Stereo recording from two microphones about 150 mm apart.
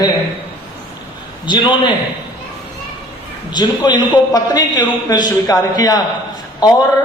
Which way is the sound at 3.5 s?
30° left (ahead or behind).